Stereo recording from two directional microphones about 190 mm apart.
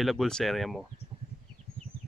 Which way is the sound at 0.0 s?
Centre (ahead or behind).